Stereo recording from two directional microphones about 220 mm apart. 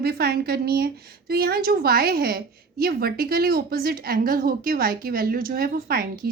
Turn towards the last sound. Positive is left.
turn(degrees=-45)  # may be behind; listen again after turning